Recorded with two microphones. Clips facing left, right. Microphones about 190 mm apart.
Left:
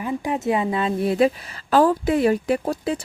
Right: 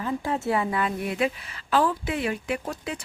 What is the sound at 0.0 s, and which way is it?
A woman's voice, 15° left (ahead or behind).